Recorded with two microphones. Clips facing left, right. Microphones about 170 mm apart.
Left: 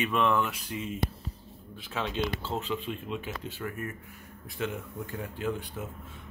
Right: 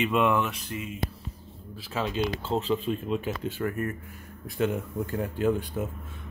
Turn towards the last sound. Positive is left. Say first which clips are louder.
# right 7 dB
turn(degrees=-45)  # may be behind; listen again after turning